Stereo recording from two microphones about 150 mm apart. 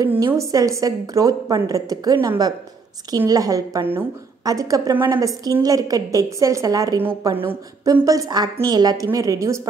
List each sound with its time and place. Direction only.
0.0 s a woman's voice: 15° right (ahead or behind)